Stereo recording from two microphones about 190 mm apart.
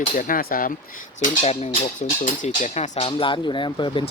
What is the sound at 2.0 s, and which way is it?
Speech, 40° left (ahead or behind).